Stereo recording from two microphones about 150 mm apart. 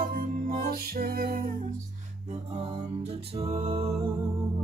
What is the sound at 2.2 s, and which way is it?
Music, 45° right (ahead or behind).